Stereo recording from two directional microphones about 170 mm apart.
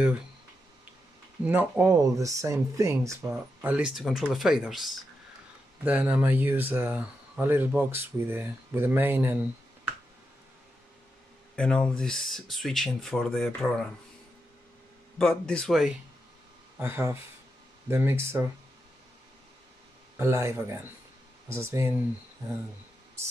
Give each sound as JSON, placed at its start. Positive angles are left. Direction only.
{"t": 1.4, "sound": "speech", "side_deg": -10}
{"t": 11.5, "sound": "speech", "side_deg": 5}
{"t": 15.1, "sound": "speech", "side_deg": 5}
{"t": 16.7, "sound": "speech", "side_deg": -15}
{"t": 20.2, "sound": "speech", "side_deg": -15}